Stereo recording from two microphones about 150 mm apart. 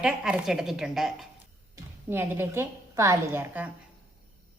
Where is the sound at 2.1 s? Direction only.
15° right (ahead or behind).